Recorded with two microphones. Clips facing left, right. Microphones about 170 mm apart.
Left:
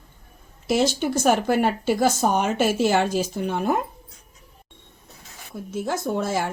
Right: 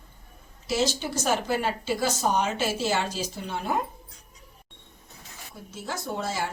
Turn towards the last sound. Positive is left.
turn(degrees=50)  # may be behind; listen again after turning